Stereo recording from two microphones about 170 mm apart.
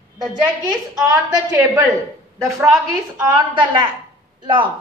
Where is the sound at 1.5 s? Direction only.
20° right (ahead or behind).